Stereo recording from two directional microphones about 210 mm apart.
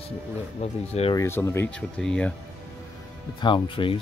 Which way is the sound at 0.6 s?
30° left (ahead or behind).